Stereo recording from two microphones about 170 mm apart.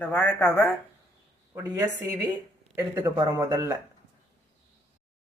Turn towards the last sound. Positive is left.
turn(degrees=-15)  # may be behind; listen again after turning